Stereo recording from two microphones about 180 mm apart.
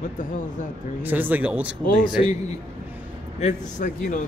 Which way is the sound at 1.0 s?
10° right (ahead or behind).